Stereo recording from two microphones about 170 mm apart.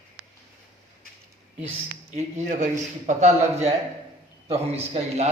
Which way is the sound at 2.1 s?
50° right (ahead or behind).